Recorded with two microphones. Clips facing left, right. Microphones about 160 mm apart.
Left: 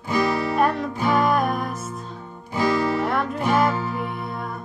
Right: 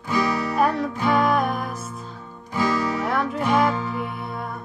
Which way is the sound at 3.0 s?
Centre (ahead or behind).